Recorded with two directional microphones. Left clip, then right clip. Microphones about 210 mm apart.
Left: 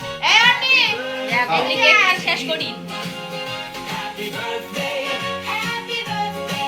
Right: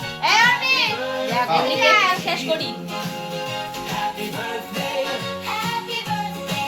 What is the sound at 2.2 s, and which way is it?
Speech, 40° right (ahead or behind).